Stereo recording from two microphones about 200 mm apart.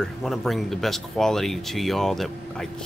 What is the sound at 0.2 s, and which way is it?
Speech, centre (ahead or behind).